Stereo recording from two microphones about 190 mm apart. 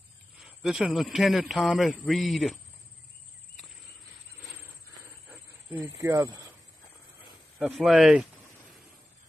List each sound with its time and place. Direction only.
0.4 s a man's voice: centre (ahead or behind)
5.7 s speech: 15° right (ahead or behind)
7.5 s a man's voice: centre (ahead or behind)